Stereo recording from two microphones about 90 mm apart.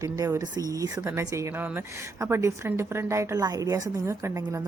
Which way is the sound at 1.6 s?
20° right (ahead or behind).